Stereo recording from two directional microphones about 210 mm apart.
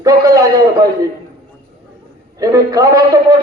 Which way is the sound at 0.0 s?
15° right (ahead or behind).